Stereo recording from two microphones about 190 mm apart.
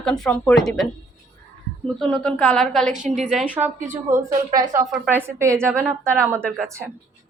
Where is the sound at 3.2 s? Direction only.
40° right (ahead or behind).